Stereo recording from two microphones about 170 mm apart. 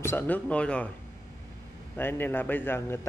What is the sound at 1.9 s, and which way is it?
Speech, 10° left (ahead or behind).